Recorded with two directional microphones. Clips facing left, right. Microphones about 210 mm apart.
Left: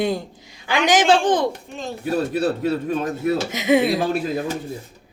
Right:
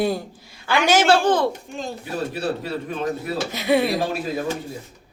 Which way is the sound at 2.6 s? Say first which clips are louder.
Left 4 dB; 50° left (ahead or behind).